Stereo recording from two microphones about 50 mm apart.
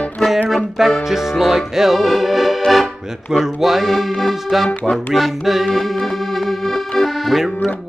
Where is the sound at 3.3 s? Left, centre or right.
Centre.